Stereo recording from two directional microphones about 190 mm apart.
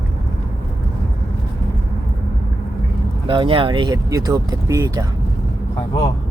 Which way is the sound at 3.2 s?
25° right (ahead or behind).